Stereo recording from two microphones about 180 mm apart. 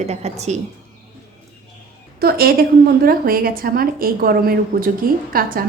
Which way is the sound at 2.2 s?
55° right (ahead or behind).